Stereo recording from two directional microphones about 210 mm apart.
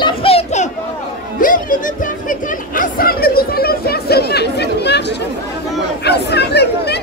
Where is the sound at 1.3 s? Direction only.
40° left (ahead or behind).